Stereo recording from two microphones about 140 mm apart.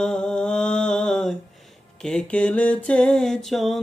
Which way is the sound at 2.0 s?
5° left (ahead or behind).